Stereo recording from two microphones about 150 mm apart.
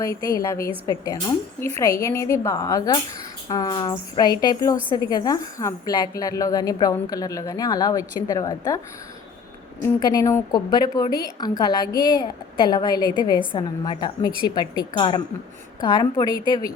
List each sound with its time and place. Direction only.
0.0 s a woman's voice: 20° left (ahead or behind)
10.0 s a woman's voice: 25° left (ahead or behind)